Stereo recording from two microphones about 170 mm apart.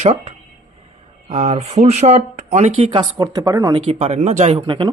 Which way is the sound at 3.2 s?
20° right (ahead or behind).